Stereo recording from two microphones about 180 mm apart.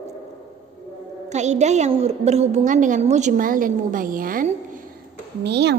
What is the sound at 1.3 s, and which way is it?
A woman's voice, 40° right (ahead or behind).